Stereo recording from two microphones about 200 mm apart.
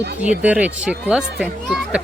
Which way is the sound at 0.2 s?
5° right (ahead or behind).